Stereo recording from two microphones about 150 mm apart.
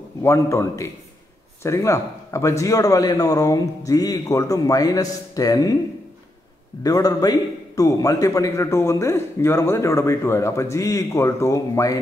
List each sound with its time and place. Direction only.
0.2 s a man's voice: 20° left (ahead or behind)
6.8 s a man's voice: 25° left (ahead or behind)